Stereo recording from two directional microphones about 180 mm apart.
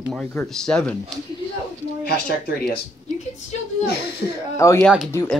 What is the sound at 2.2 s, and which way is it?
Speech, 60° left (ahead or behind).